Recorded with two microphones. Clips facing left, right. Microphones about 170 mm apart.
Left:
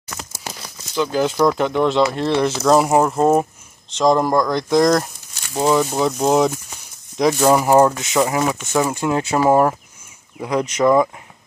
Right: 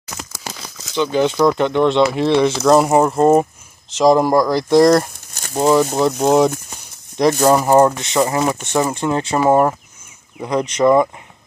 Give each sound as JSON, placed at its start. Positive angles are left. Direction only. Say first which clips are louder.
{"t": 0.9, "sound": "speech", "louder": "right 2 dB", "side_deg": 0}
{"t": 5.3, "sound": "a sound", "louder": "right 6 dB", "side_deg": -45}
{"t": 5.6, "sound": "speech", "louder": "right 3 dB", "side_deg": 0}
{"t": 7.5, "sound": "speech", "louder": "right 1 dB", "side_deg": 5}